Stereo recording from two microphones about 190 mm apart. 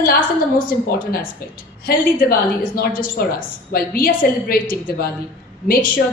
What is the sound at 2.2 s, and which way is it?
A woman's voice, 50° left (ahead or behind).